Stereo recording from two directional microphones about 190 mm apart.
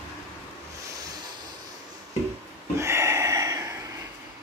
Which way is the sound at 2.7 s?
15° right (ahead or behind).